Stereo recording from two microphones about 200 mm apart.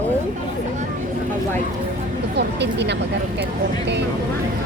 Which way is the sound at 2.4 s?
60° right (ahead or behind).